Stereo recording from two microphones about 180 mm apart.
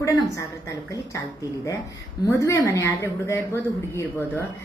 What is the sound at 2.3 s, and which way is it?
Speech, 15° left (ahead or behind).